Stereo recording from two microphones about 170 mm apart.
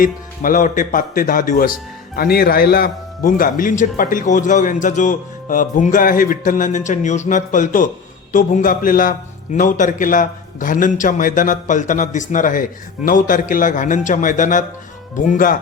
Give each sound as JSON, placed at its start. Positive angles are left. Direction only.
{"t": 0.0, "sound": "speech", "side_deg": 55}